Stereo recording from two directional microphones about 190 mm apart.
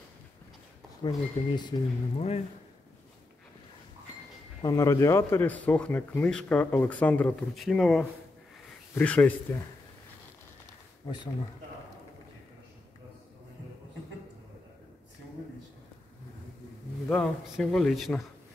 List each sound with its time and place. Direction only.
1.0 s speech: 25° left (ahead or behind)
4.6 s speech: 20° left (ahead or behind)
11.1 s speech: 20° left (ahead or behind)
17.1 s speech: 5° left (ahead or behind)